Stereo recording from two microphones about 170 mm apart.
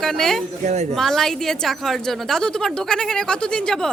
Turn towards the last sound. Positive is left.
turn(degrees=5)  # may be behind; listen again after turning